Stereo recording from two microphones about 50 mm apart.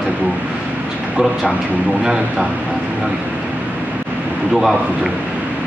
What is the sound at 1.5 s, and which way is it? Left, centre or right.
A man's voice, right.